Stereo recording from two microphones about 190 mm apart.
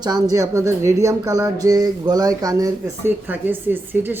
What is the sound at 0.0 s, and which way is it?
Speech, 20° right (ahead or behind).